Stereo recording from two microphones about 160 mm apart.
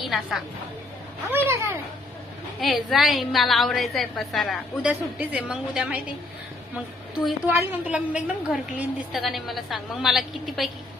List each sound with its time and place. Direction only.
0.0 s a woman's voice: centre (ahead or behind)
1.3 s speech: 15° right (ahead or behind)
2.6 s a woman's voice: centre (ahead or behind)
7.4 s a woman's voice: 10° right (ahead or behind)